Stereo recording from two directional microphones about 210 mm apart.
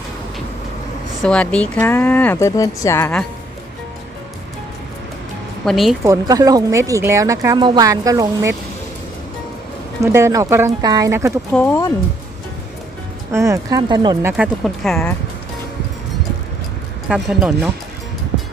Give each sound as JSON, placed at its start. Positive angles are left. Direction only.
{"t": 1.2, "sound": "speech", "side_deg": 5}
{"t": 5.7, "sound": "speech", "side_deg": 0}
{"t": 6.0, "sound": "speech", "side_deg": -15}
{"t": 9.9, "sound": "speech", "side_deg": -10}
{"t": 11.5, "sound": "speech", "side_deg": 10}
{"t": 13.3, "sound": "speech", "side_deg": -15}
{"t": 14.3, "sound": "speech", "side_deg": 0}
{"t": 17.1, "sound": "speech", "side_deg": -5}